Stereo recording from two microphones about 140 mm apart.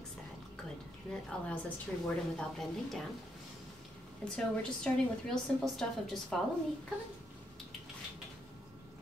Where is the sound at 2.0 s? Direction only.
5° left (ahead or behind).